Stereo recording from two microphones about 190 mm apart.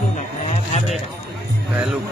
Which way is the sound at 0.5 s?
35° left (ahead or behind).